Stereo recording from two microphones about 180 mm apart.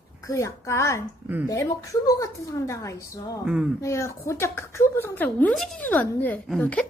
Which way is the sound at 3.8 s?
15° left (ahead or behind).